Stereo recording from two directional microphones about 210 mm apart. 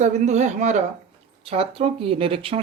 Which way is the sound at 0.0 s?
35° right (ahead or behind).